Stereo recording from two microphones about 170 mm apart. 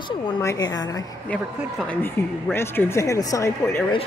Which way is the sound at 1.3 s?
10° left (ahead or behind).